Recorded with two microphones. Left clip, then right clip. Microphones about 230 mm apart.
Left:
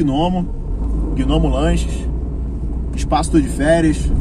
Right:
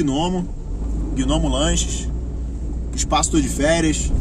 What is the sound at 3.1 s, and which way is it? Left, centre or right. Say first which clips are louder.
Speech: left 3 dB; right.